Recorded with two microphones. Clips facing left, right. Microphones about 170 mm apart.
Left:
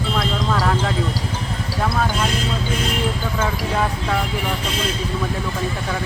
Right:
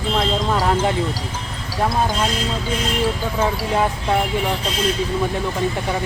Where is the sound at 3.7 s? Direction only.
20° right (ahead or behind).